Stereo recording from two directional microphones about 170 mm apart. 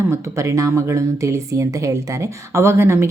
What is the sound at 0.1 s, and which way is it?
Speech, 15° right (ahead or behind).